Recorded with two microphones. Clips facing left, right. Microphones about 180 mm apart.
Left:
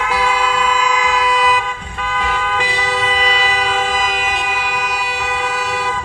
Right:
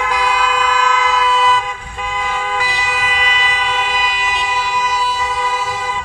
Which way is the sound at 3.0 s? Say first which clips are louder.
Left 3 dB; 35° left (ahead or behind).